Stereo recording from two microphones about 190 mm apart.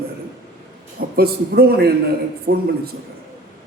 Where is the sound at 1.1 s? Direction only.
55° right (ahead or behind).